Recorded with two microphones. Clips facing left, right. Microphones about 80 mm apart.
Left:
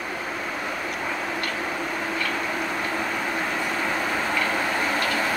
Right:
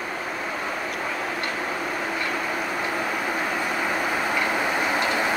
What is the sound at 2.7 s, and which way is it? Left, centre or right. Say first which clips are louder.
Vehicle: right 1 dB; centre.